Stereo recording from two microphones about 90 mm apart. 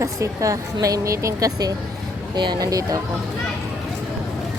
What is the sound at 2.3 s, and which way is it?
Speech, 55° right (ahead or behind).